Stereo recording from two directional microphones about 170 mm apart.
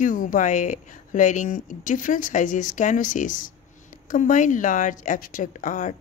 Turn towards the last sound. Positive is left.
turn(degrees=50)  # may be behind; listen again after turning